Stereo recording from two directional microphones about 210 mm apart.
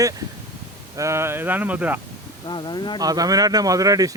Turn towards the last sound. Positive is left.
turn(degrees=-15)  # may be behind; listen again after turning